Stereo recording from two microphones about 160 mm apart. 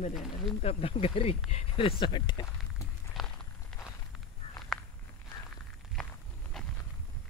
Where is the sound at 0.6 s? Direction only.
35° left (ahead or behind).